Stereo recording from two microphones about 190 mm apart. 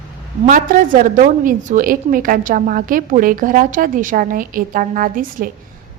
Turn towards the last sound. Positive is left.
turn(degrees=-45)  # may be behind; listen again after turning